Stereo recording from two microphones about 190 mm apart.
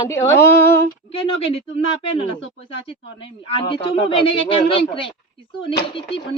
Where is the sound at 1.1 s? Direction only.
30° left (ahead or behind).